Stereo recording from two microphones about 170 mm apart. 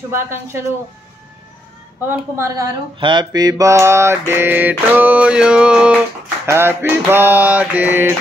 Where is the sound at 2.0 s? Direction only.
15° right (ahead or behind).